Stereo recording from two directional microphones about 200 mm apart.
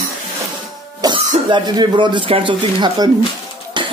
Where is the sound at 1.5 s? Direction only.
20° right (ahead or behind).